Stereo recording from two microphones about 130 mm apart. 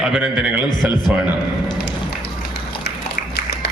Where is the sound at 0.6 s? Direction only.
35° left (ahead or behind).